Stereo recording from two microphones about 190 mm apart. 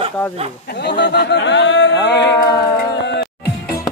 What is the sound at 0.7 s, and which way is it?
Speech, 65° left (ahead or behind).